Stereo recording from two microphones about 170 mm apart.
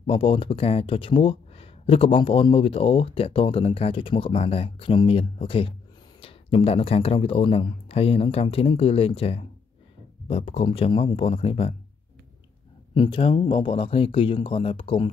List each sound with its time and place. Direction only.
0.0 s speech: 35° left (ahead or behind)
12.9 s speech: 30° left (ahead or behind)